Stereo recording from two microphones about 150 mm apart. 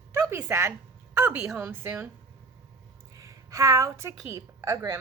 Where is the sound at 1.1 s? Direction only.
15° right (ahead or behind).